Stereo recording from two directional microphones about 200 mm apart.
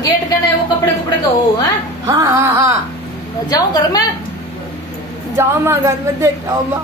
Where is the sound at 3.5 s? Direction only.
20° left (ahead or behind).